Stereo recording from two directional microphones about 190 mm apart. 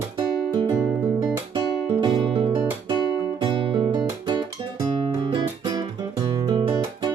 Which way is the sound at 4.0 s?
15° right (ahead or behind).